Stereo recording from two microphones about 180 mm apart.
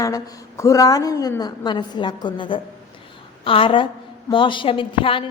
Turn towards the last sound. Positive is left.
turn(degrees=30)  # may be behind; listen again after turning